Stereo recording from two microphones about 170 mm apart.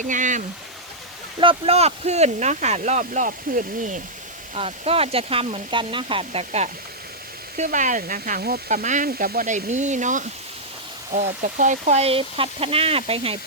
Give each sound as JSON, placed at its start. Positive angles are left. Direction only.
{"t": 0.0, "sound": "speech", "side_deg": -50}
{"t": 1.4, "sound": "speech", "side_deg": -35}
{"t": 4.5, "sound": "speech", "side_deg": -35}
{"t": 8.7, "sound": "speech", "side_deg": -45}